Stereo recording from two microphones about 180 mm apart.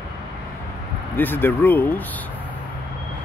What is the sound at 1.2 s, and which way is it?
Speech, 10° left (ahead or behind).